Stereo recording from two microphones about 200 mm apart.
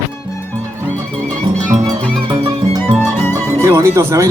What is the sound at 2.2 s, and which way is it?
Music, 25° right (ahead or behind).